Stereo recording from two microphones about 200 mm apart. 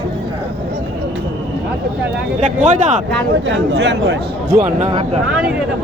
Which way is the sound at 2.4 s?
40° right (ahead or behind).